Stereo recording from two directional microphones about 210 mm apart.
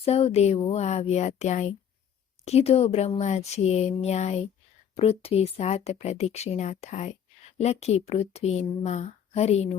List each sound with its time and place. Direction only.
0.0 s speech: 30° left (ahead or behind)